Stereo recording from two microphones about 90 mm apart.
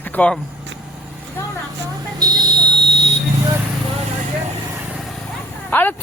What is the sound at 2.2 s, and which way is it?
Buzzer, 45° right (ahead or behind).